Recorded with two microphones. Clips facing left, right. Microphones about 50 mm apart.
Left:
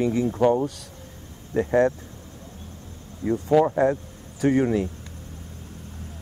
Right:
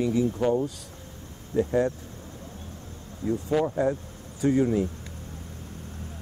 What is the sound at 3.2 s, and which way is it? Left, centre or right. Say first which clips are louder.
Speech: left 6 dB; left.